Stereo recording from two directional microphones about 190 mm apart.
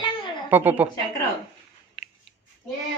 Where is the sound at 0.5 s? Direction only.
10° right (ahead or behind).